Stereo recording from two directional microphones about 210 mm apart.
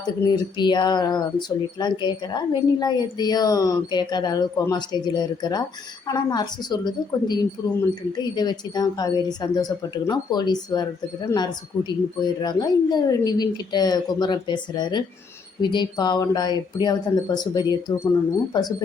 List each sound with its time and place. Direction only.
0.2 s speech: 20° left (ahead or behind)